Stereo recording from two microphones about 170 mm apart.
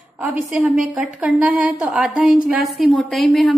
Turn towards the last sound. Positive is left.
turn(degrees=0)  # may be behind; listen again after turning